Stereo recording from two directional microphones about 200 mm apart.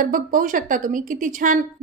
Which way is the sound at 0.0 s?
45° right (ahead or behind).